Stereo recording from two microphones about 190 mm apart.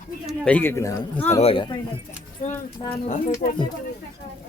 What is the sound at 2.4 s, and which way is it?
Speech, 35° left (ahead or behind).